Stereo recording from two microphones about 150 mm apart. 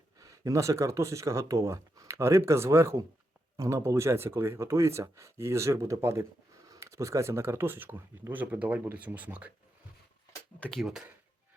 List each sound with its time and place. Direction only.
0.2 s speech: 20° right (ahead or behind)
10.6 s speech: 5° left (ahead or behind)